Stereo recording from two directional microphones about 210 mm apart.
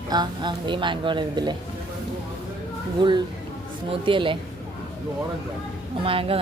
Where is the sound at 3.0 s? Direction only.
20° right (ahead or behind).